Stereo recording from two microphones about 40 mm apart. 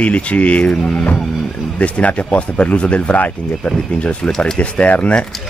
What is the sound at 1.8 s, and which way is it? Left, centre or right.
Speech, left.